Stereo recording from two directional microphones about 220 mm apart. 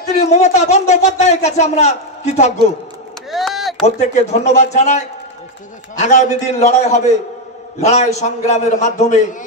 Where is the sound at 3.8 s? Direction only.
30° left (ahead or behind).